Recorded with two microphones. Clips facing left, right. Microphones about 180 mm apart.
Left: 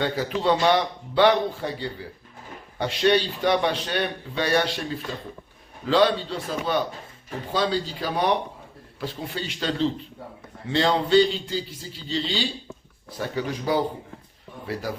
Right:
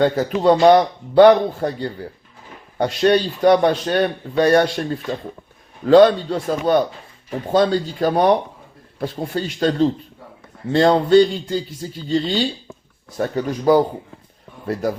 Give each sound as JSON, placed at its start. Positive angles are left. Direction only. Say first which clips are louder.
{"t": 0.0, "sound": "a man's voice", "louder": "right 8 dB", "side_deg": -45}